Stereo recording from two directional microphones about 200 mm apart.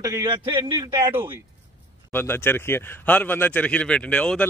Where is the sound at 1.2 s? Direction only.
10° right (ahead or behind).